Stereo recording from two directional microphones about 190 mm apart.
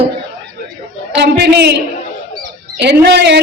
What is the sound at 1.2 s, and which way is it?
Speech, 60° right (ahead or behind).